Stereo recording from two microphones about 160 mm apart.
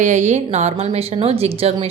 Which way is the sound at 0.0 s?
50° right (ahead or behind).